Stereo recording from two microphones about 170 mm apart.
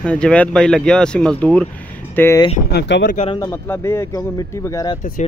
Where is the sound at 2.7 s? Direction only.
90° left.